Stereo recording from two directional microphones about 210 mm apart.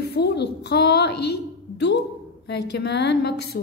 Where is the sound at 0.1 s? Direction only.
55° left (ahead or behind).